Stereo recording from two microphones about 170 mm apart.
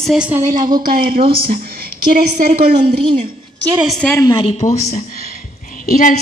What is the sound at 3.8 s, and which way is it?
Speech, centre (ahead or behind).